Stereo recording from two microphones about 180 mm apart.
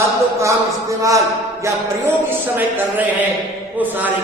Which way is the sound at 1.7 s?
15° right (ahead or behind).